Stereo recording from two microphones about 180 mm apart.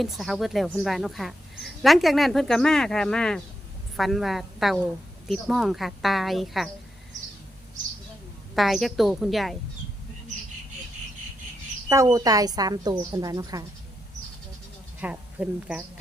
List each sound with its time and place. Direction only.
0.0 s speech: centre (ahead or behind)
7.1 s bird: 45° right (ahead or behind)
8.5 s speech: centre (ahead or behind)
12.0 s a woman's voice: 20° right (ahead or behind)
15.0 s a woman's voice: 5° right (ahead or behind)